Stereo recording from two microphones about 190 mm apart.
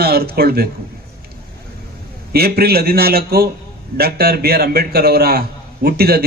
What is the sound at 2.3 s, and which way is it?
A man's voice, 55° right (ahead or behind).